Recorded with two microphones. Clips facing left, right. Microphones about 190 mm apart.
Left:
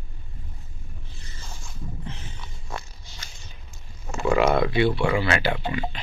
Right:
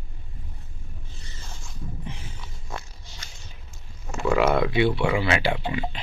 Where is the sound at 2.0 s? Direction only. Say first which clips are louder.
Even; 10° right (ahead or behind).